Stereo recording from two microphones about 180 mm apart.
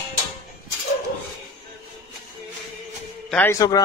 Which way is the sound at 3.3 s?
15° left (ahead or behind).